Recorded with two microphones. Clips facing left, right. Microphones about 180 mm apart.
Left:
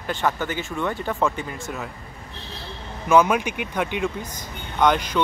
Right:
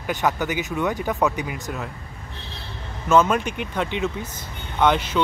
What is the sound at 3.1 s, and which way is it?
Speech, 10° left (ahead or behind).